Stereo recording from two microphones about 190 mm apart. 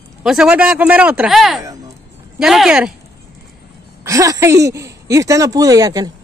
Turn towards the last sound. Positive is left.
turn(degrees=-20)  # may be behind; listen again after turning